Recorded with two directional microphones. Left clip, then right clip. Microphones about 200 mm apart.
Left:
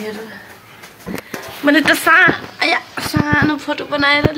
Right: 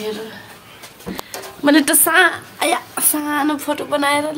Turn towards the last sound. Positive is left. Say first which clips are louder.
# left 3 dB
turn(degrees=-15)  # may be behind; listen again after turning